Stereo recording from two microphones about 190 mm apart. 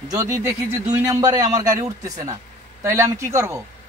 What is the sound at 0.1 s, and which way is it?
A man's voice, 20° right (ahead or behind).